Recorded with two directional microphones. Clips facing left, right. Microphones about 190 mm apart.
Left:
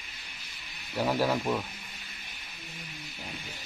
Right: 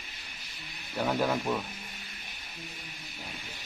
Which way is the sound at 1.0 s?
5° left (ahead or behind).